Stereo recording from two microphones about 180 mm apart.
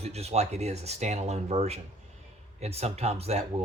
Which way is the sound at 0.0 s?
35° right (ahead or behind).